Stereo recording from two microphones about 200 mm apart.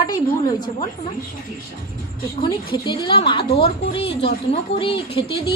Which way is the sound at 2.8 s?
25° left (ahead or behind).